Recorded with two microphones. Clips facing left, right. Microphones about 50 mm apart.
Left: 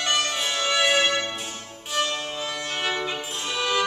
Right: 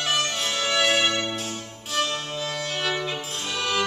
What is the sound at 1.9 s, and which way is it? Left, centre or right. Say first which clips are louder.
Violin: even; centre.